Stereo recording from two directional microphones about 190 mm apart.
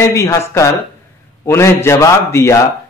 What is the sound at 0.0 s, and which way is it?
A man's voice, 15° left (ahead or behind).